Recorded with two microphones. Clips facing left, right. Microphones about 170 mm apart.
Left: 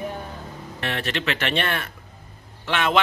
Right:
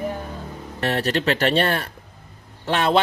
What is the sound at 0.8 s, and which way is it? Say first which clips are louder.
Speech: right 6 dB; 40° right (ahead or behind).